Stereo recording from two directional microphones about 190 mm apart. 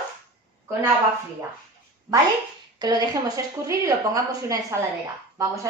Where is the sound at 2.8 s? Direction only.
20° right (ahead or behind).